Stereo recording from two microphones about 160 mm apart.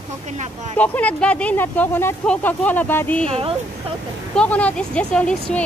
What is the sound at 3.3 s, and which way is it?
Speech, 35° right (ahead or behind).